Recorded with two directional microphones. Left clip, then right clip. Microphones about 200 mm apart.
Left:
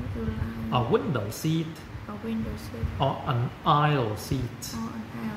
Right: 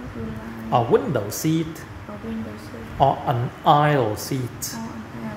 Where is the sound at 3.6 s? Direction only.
20° left (ahead or behind).